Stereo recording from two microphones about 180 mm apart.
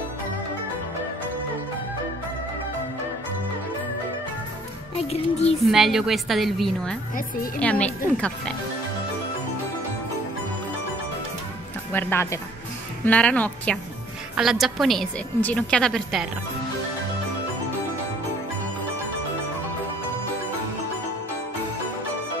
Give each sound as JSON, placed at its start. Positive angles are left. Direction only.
{"t": 4.9, "sound": "speech", "side_deg": 35}
{"t": 5.7, "sound": "a woman's voice", "side_deg": 0}
{"t": 11.9, "sound": "a woman's voice", "side_deg": 10}